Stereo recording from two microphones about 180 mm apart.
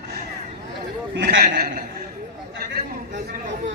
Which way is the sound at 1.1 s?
70° right (ahead or behind).